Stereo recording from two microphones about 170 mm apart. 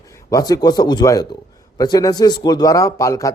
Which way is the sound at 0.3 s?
20° left (ahead or behind).